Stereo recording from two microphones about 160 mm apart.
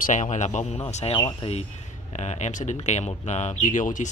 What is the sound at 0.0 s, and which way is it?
Speech, 50° left (ahead or behind).